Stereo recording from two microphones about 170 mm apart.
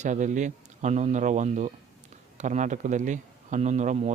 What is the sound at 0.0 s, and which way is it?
A man's voice, 45° right (ahead or behind).